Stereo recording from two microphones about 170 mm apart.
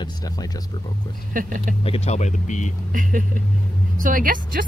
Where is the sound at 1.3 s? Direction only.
50° right (ahead or behind).